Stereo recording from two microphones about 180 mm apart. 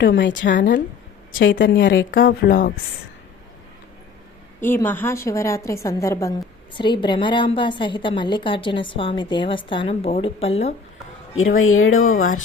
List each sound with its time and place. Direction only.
0.0 s a woman's voice: 85° left
2.0 s speech: 50° left (ahead or behind)
4.6 s a woman's voice: 10° left (ahead or behind); by 10.8 s 35° left (ahead or behind)
11.3 s a woman's voice: 90° left